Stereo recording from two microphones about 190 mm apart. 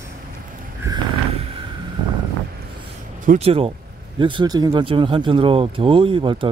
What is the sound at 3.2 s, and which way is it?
Speech, 30° right (ahead or behind).